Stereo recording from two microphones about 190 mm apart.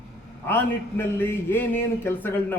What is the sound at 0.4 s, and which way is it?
A man's voice, 10° left (ahead or behind).